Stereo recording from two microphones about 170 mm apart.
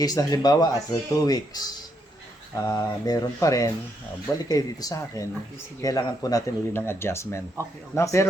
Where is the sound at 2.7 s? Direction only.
20° left (ahead or behind).